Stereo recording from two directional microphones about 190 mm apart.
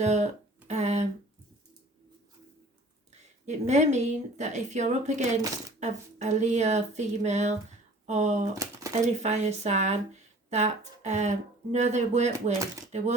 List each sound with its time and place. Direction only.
0.0 s speech: 35° right (ahead or behind)
0.7 s a sound: 35° right (ahead or behind)
3.1 s speech: 35° right (ahead or behind)